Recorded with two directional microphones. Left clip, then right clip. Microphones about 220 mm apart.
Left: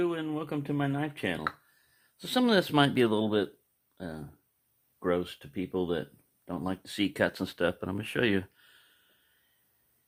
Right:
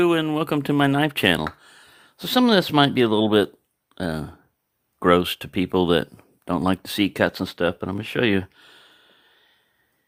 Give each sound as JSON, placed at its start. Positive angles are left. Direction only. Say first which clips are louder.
{"t": 0.0, "sound": "speech", "louder": "right 11 dB", "side_deg": -45}
{"t": 2.1, "sound": "speech", "louder": "right 8 dB", "side_deg": -30}
{"t": 3.9, "sound": "speech", "louder": "right 13 dB", "side_deg": -45}